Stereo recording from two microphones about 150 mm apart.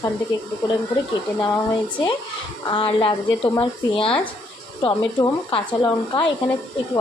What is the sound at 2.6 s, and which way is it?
Speech, 35° left (ahead or behind).